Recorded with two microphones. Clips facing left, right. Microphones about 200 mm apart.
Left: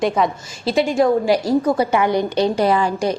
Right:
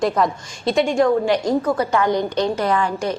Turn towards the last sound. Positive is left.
turn(degrees=10)  # may be behind; listen again after turning